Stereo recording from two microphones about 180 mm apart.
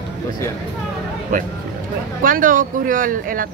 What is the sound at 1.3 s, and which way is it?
Speech, 50° right (ahead or behind).